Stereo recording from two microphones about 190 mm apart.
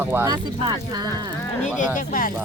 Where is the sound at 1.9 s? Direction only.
45° left (ahead or behind).